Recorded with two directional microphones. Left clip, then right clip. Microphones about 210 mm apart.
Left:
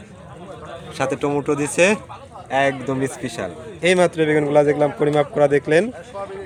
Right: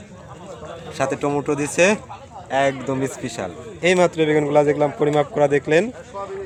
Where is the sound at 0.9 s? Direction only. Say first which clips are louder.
Even; 5° left (ahead or behind).